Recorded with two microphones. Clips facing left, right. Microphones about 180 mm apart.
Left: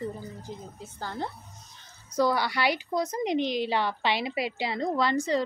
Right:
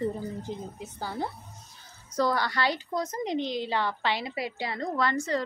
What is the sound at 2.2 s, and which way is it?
A woman's voice, 10° left (ahead or behind).